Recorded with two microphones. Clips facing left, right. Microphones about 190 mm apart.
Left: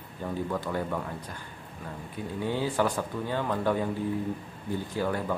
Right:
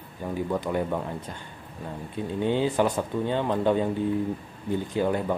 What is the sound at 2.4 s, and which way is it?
Speech, 20° right (ahead or behind).